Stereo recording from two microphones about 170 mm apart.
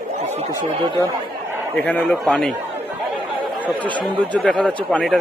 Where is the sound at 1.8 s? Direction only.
10° left (ahead or behind).